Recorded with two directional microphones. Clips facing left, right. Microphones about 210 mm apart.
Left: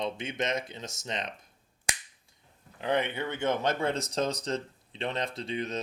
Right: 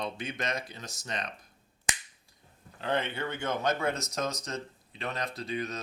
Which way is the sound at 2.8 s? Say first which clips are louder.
Left 2 dB; 15° left (ahead or behind).